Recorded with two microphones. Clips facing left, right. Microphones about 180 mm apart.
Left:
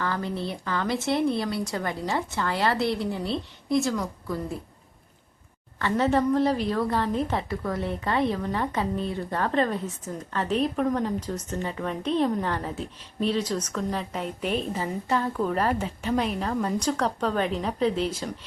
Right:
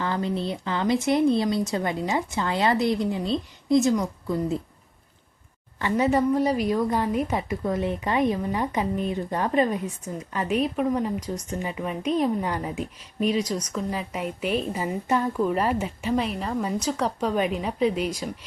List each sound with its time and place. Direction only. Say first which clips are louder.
0.0 s speech: right 3 dB; 20° right (ahead or behind)
5.8 s a woman's voice: right 1 dB; 10° right (ahead or behind)